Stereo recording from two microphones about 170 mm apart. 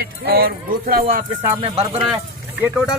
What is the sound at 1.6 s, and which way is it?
Speech, 35° right (ahead or behind).